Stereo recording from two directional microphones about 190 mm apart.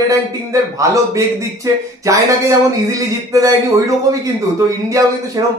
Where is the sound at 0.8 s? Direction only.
15° right (ahead or behind).